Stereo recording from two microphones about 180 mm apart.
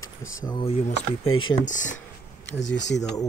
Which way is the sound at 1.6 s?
45° left (ahead or behind).